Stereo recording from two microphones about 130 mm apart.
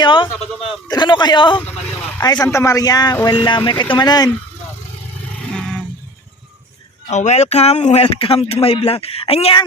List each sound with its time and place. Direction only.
0.0 s a sound: 40° left (ahead or behind)
0.9 s a man's voice: 35° left (ahead or behind)
7.1 s speech: 60° left (ahead or behind)
8.0 s speech: 45° left (ahead or behind)